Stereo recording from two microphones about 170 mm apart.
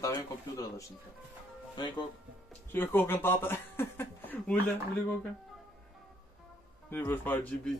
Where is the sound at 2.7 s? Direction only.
10° left (ahead or behind).